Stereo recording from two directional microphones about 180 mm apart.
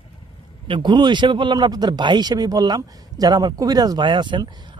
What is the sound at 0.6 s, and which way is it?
A man's voice, 25° right (ahead or behind).